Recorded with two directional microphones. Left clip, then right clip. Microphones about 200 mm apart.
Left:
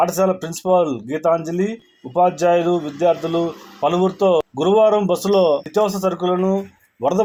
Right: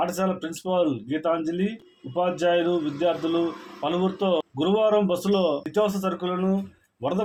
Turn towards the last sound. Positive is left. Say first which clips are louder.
# left 9 dB
turn(degrees=30)  # may be behind; listen again after turning